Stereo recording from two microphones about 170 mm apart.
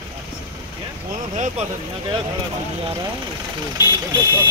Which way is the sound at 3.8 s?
25° left (ahead or behind).